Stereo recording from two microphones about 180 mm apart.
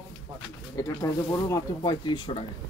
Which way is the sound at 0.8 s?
20° left (ahead or behind).